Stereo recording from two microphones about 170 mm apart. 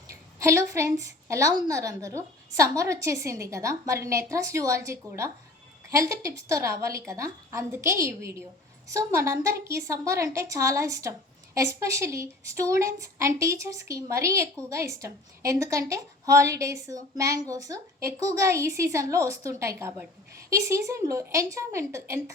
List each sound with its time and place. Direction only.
0.1 s a woman's voice: 20° right (ahead or behind)